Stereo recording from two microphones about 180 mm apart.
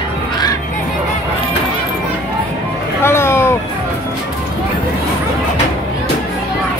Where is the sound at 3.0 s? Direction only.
15° left (ahead or behind).